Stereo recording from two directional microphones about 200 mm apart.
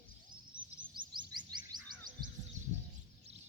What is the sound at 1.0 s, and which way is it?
Chirp, 25° right (ahead or behind).